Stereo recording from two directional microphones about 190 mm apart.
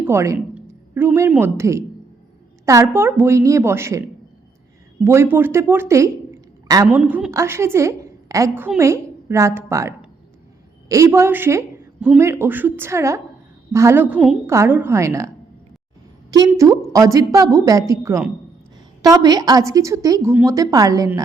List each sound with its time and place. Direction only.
0.0 s a woman's voice: 15° right (ahead or behind)
5.0 s a woman's voice: 15° right (ahead or behind)
6.8 s a woman's voice: 5° right (ahead or behind)
16.3 s a woman's voice: 20° right (ahead or behind)